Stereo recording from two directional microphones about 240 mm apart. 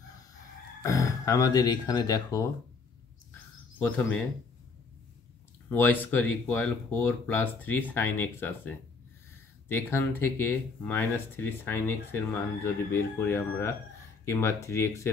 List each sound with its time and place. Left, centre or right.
0.8 s speech: centre
5.7 s speech: centre